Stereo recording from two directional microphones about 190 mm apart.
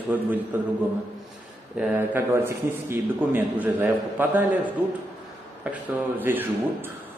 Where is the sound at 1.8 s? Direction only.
10° right (ahead or behind).